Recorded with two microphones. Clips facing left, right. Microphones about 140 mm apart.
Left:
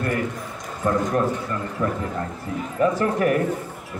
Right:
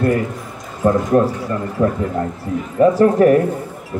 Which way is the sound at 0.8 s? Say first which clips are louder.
Right 7 dB; 30° right (ahead or behind).